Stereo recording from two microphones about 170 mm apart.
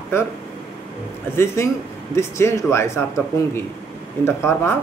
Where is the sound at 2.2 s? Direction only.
15° left (ahead or behind).